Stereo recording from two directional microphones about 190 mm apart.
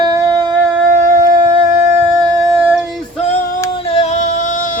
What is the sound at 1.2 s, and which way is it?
Shofar, 25° right (ahead or behind).